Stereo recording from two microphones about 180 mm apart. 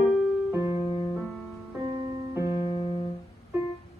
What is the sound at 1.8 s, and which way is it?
Music, 25° right (ahead or behind).